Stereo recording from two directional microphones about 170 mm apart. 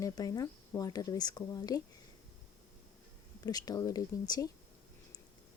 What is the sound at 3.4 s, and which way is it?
Speech, 20° left (ahead or behind).